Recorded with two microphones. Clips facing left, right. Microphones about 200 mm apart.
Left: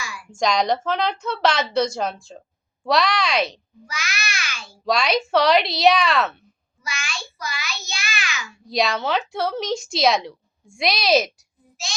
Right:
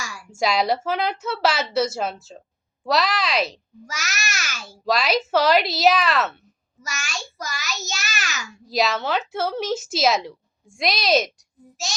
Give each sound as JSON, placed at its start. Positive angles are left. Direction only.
{"t": 0.0, "sound": "a sound", "side_deg": -45}
{"t": 0.3, "sound": "a woman's voice", "side_deg": -5}
{"t": 3.8, "sound": "a child's voice", "side_deg": -45}
{"t": 4.9, "sound": "a woman's voice", "side_deg": 0}
{"t": 6.8, "sound": "a child's voice", "side_deg": -45}
{"t": 8.6, "sound": "a woman's voice", "side_deg": 0}